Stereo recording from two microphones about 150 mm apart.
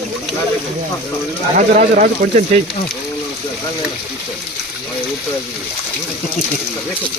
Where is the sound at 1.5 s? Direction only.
60° right (ahead or behind).